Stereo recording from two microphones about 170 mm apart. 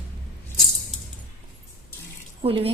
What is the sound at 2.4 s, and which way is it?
Speech, 35° right (ahead or behind).